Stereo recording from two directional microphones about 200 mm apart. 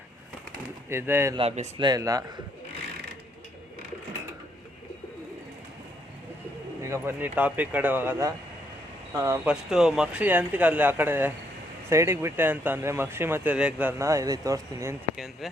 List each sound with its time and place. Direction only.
0.9 s speech: 10° right (ahead or behind)
1.4 s a man's voice: 30° right (ahead or behind)
1.8 s speech: 20° right (ahead or behind)
6.8 s speech: 15° right (ahead or behind)
15.1 s speech: centre (ahead or behind)